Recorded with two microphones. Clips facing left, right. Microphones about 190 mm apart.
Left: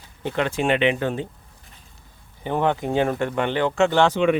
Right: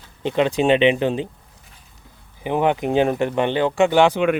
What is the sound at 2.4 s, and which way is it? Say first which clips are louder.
Speech: right 3 dB; 15° right (ahead or behind).